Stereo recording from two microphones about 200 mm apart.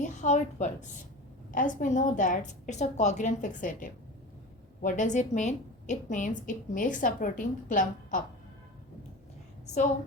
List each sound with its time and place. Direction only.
0.0 s a woman's voice: 35° left (ahead or behind)